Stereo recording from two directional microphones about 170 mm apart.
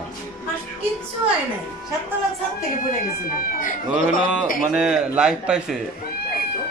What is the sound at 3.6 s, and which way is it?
Speech, 50° left (ahead or behind).